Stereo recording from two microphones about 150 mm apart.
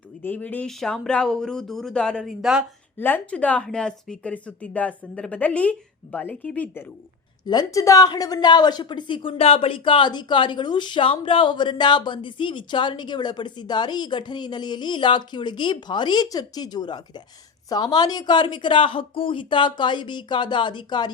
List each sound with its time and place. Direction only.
0.2 s speech: 10° left (ahead or behind)
3.0 s a woman's voice: 10° left (ahead or behind)
7.4 s a woman's voice: 25° left (ahead or behind)